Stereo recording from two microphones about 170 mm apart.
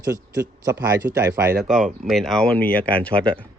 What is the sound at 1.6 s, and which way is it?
Speech, centre (ahead or behind).